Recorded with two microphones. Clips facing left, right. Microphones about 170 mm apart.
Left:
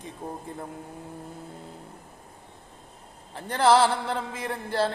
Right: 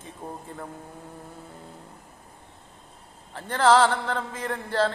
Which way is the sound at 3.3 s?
15° left (ahead or behind).